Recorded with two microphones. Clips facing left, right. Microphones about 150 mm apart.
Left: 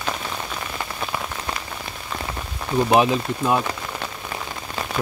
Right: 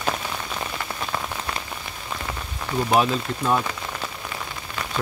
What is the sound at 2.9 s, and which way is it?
Speech, 15° left (ahead or behind).